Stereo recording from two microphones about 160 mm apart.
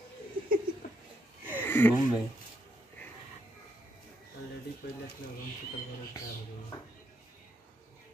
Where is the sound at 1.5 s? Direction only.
10° left (ahead or behind).